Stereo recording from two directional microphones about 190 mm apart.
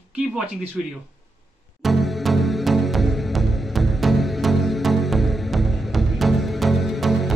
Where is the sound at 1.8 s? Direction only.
Centre (ahead or behind).